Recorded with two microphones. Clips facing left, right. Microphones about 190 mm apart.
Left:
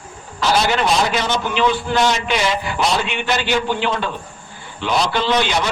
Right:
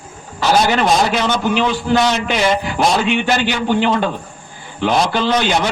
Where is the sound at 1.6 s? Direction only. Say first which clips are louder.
Left 1 dB; 50° right (ahead or behind).